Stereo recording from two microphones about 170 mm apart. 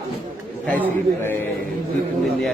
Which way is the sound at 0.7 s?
10° left (ahead or behind).